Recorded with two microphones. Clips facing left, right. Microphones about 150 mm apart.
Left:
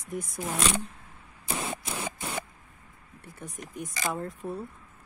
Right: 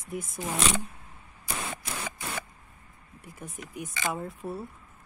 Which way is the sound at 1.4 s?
25° left (ahead or behind).